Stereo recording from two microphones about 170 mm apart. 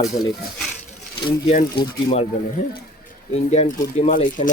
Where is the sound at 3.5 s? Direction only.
40° left (ahead or behind).